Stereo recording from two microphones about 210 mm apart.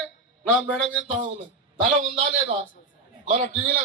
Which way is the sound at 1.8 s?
35° right (ahead or behind).